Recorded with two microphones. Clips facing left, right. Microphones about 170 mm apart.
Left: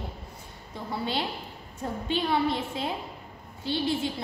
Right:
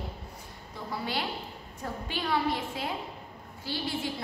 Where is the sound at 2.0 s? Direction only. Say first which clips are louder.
Left 3 dB; 25° left (ahead or behind).